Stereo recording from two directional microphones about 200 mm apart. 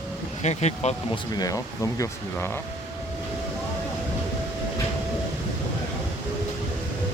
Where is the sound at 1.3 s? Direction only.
20° left (ahead or behind).